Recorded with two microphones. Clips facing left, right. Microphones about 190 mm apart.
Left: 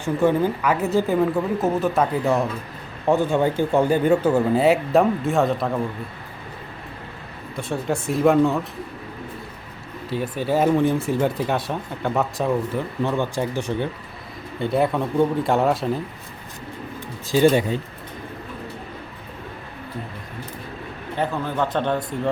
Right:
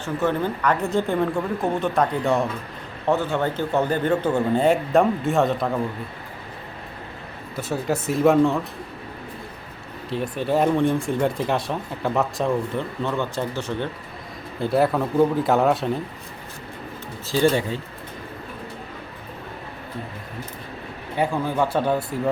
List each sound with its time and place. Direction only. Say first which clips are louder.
0.0 s speech: left 4 dB; 10° left (ahead or behind)
3.1 s speech: left 3 dB; 15° left (ahead or behind)
7.5 s speech: even; 5° right (ahead or behind)
10.1 s speech: even; centre (ahead or behind)
13.0 s speech: left 4 dB; 15° left (ahead or behind)
14.6 s speech: right 1 dB; centre (ahead or behind)
17.2 s speech: left 3 dB; 15° left (ahead or behind)
21.2 s speech: right 2 dB; 10° right (ahead or behind)